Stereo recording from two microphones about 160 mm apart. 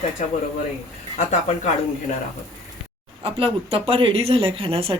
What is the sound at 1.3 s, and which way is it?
Speech, 45° left (ahead or behind).